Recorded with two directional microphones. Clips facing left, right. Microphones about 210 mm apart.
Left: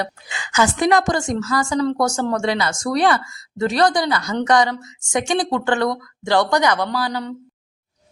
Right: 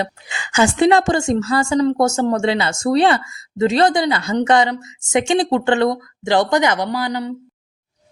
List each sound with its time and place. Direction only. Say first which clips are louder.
0.0 s a woman's voice: right 2 dB; 25° right (ahead or behind)